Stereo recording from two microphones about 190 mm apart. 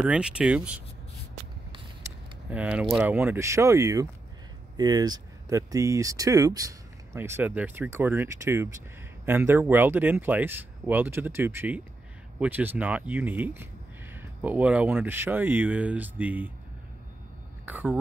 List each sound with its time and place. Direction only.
0.0 s speech: 5° right (ahead or behind)
2.0 s a sound: 5° right (ahead or behind)
3.2 s speech: 15° right (ahead or behind)
17.6 s speech: 10° right (ahead or behind)